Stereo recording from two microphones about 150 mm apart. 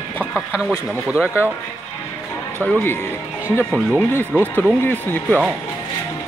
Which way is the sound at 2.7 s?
10° left (ahead or behind).